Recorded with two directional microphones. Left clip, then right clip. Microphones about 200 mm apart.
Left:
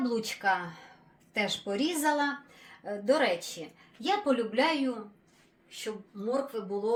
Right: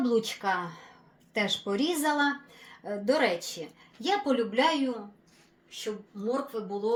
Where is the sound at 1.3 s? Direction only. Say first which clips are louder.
Right 2 dB; 30° right (ahead or behind).